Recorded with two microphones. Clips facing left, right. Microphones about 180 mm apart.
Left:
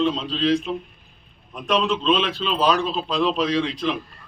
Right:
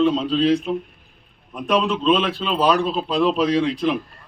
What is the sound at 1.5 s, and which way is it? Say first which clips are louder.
Speech: right 2 dB; 10° right (ahead or behind).